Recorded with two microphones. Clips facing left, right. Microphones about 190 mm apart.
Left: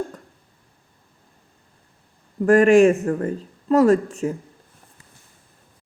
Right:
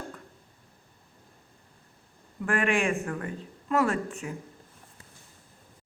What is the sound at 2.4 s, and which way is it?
Speech, 40° left (ahead or behind).